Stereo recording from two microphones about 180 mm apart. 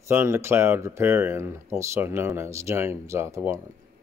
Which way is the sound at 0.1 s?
15° right (ahead or behind).